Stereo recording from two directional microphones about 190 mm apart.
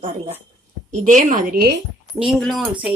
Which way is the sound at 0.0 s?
35° right (ahead or behind).